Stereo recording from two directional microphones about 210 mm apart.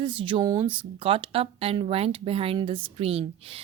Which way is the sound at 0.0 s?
25° right (ahead or behind).